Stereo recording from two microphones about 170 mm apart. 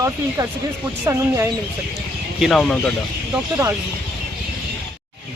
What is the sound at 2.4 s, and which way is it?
Speech, centre (ahead or behind).